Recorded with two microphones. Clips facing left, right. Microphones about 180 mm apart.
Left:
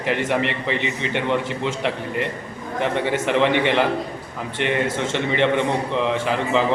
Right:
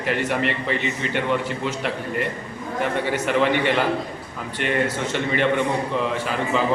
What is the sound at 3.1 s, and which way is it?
Speech, 20° left (ahead or behind).